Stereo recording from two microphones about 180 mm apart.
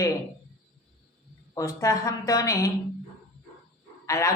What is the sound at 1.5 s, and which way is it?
Speech, 15° left (ahead or behind).